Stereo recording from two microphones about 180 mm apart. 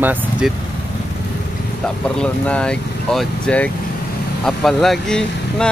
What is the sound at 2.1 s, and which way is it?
Speech, 5° left (ahead or behind).